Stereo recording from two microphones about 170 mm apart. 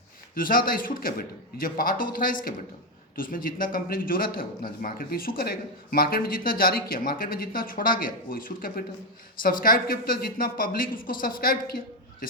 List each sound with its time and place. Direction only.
0.3 s a man's voice: 55° left (ahead or behind)